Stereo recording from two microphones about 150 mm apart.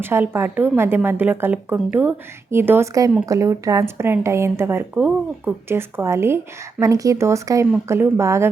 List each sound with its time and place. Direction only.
0.0 s speech: 15° right (ahead or behind)